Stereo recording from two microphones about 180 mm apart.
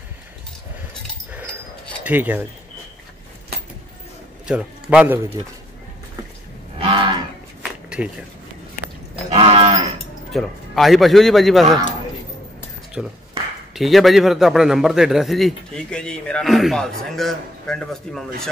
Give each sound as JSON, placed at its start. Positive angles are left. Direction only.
{"t": 2.0, "sound": "speech", "side_deg": -10}
{"t": 4.5, "sound": "a man's voice", "side_deg": -5}
{"t": 6.8, "sound": "cattle", "side_deg": -30}
{"t": 7.9, "sound": "speech", "side_deg": -5}
{"t": 9.3, "sound": "cattle", "side_deg": -35}
{"t": 10.3, "sound": "a man's voice", "side_deg": 0}
{"t": 13.0, "sound": "a man's voice", "side_deg": -5}